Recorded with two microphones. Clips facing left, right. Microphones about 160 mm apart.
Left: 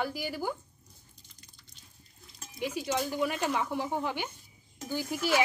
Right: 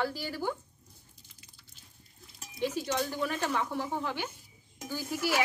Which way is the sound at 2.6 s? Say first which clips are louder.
Even; 10° left (ahead or behind).